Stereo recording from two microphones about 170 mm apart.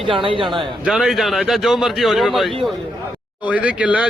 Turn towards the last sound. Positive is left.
turn(degrees=-10)  # may be behind; listen again after turning